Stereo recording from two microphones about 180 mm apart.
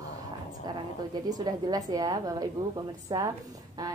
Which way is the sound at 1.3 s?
20° right (ahead or behind).